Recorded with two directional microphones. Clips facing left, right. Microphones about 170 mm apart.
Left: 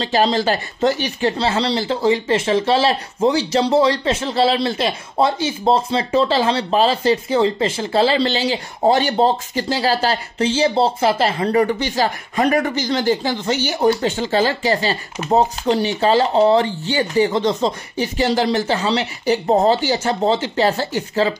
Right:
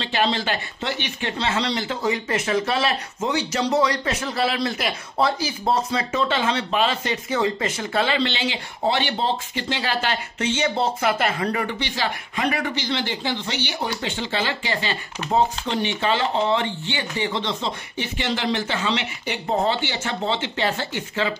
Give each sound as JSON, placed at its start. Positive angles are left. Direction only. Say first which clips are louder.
{"t": 0.0, "sound": "speech", "louder": "left 6 dB", "side_deg": 40}